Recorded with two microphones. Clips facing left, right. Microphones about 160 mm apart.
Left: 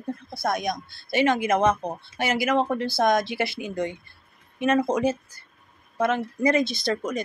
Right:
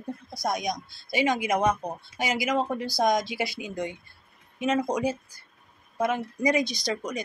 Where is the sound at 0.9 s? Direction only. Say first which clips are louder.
Left 4 dB; 60° left (ahead or behind).